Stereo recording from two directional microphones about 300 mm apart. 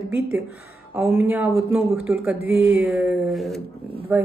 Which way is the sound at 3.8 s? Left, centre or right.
Centre.